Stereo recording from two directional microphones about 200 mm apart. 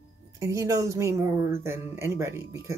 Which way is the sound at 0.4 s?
15° right (ahead or behind).